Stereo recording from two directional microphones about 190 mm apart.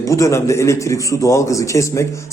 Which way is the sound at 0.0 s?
15° left (ahead or behind).